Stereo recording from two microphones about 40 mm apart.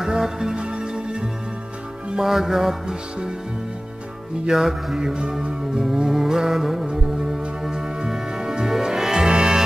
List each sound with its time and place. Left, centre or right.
0.0 s music: centre
2.2 s music: centre
4.5 s music: centre
5.2 s music: right
5.9 s music: centre